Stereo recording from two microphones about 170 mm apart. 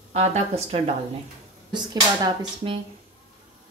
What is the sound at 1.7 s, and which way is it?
Speech, 25° right (ahead or behind).